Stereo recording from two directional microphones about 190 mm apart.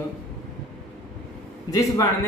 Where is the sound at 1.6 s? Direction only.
15° left (ahead or behind).